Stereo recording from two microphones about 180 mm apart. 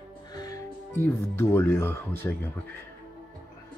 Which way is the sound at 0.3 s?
20° left (ahead or behind).